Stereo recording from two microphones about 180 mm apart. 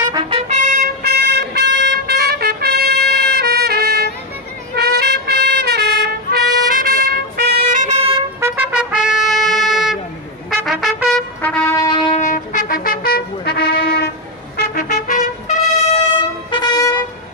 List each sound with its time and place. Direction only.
0.1 s trumpet: 30° right (ahead or behind)
0.7 s a sound: 60° right (ahead or behind)
4.7 s trumpet: 65° right (ahead or behind)
8.4 s trumpet: 5° right (ahead or behind)
11.7 s music: 20° left (ahead or behind)
12.1 s trumpet: 45° left (ahead or behind)
15.0 s trumpet: 40° left (ahead or behind)
16.4 s music: 25° left (ahead or behind)